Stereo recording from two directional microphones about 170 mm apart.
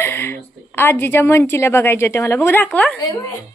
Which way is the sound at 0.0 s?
15° left (ahead or behind).